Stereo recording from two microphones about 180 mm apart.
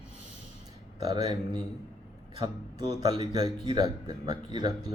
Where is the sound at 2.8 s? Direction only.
20° right (ahead or behind).